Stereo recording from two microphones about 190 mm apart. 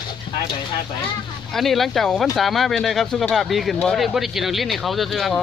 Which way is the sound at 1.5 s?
Centre (ahead or behind).